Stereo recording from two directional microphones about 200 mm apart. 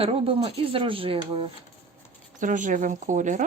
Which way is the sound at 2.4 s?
40° right (ahead or behind).